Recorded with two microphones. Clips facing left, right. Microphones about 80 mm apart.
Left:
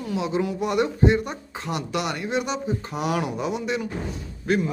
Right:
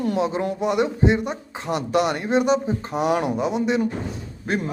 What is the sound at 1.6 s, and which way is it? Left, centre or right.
A man's voice, right.